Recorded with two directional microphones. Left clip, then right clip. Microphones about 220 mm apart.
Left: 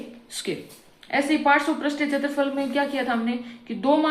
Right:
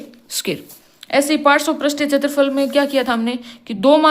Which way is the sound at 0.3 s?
50° right (ahead or behind).